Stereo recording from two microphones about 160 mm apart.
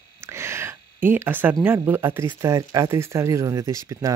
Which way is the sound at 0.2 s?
15° right (ahead or behind).